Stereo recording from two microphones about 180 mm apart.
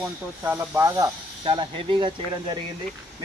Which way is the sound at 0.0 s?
10° right (ahead or behind).